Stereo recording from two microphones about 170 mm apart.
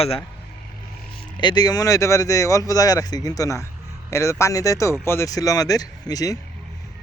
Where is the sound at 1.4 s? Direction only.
25° left (ahead or behind).